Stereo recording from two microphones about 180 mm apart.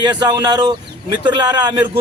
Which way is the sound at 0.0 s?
25° right (ahead or behind).